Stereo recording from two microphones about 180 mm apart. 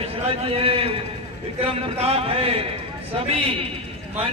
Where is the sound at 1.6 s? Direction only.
35° right (ahead or behind).